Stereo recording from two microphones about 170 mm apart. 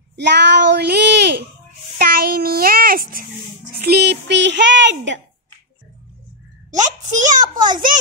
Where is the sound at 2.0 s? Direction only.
65° right (ahead or behind); by 5.2 s 90° right.